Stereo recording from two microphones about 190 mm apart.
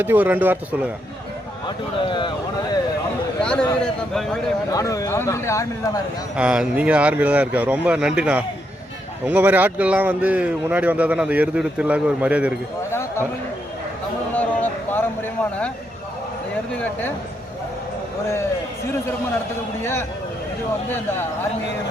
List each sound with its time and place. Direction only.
0.0 s speech: 10° right (ahead or behind)
1.6 s speech: 25° left (ahead or behind)
3.4 s a man's voice: 5° left (ahead or behind)
4.7 s speech: 15° left (ahead or behind)
6.3 s speech: 5° right (ahead or behind)
12.9 s speech: 15° left (ahead or behind)
14.3 s a sound: 10° left (ahead or behind)
19.8 s speech: 15° left (ahead or behind)